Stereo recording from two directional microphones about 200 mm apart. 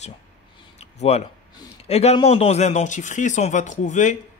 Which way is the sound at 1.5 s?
20° left (ahead or behind).